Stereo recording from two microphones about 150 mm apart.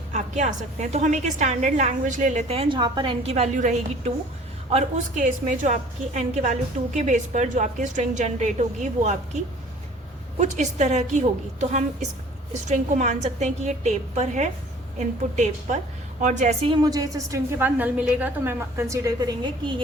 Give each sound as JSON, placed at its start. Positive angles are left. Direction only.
{"t": 0.1, "sound": "a woman's voice", "side_deg": -55}
{"t": 3.2, "sound": "a woman's voice", "side_deg": -45}
{"t": 10.4, "sound": "a woman's voice", "side_deg": -50}